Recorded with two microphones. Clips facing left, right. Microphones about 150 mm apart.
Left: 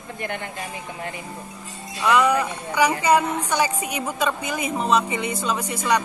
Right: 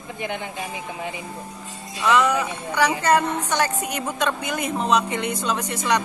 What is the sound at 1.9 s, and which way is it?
Speech, 10° left (ahead or behind).